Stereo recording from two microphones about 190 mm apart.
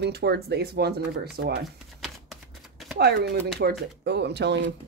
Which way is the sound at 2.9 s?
60° right (ahead or behind).